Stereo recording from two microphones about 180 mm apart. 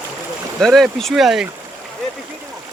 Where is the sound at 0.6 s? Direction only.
Centre (ahead or behind).